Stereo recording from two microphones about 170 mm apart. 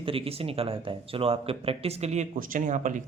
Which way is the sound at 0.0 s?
35° right (ahead or behind).